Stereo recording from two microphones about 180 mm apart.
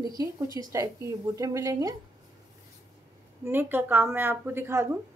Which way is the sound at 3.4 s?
10° right (ahead or behind).